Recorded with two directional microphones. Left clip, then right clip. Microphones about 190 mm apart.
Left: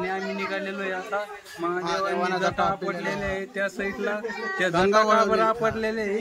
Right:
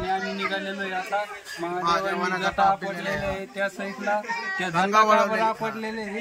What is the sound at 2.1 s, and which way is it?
Speech, 35° left (ahead or behind).